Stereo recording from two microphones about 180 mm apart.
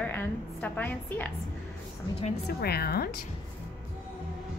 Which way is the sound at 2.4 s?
60° left (ahead or behind).